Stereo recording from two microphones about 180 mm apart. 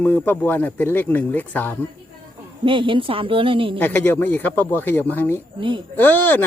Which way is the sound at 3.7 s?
10° left (ahead or behind).